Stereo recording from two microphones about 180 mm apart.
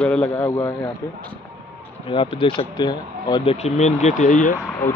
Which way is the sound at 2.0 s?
30° left (ahead or behind).